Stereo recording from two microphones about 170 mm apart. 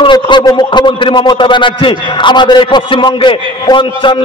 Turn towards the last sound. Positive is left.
turn(degrees=30)  # may be behind; listen again after turning